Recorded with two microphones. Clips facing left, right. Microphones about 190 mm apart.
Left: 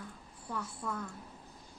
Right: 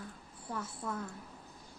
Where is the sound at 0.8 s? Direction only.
25° right (ahead or behind).